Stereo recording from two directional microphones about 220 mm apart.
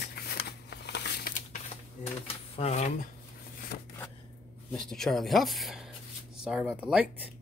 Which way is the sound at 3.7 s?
40° left (ahead or behind).